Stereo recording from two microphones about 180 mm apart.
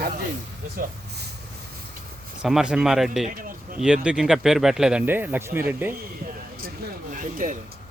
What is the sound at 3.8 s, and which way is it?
Speech, 5° right (ahead or behind).